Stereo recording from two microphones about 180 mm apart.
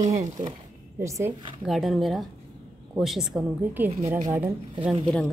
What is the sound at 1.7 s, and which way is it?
A woman's voice, centre (ahead or behind).